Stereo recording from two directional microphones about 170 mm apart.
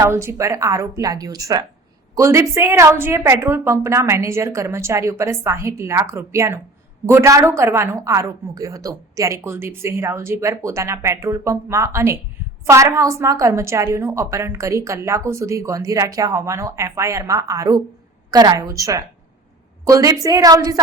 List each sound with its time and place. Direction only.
0.0 s a woman's voice: 15° right (ahead or behind)